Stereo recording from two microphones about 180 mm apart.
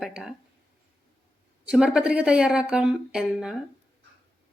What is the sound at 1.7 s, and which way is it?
A woman's voice, 5° right (ahead or behind).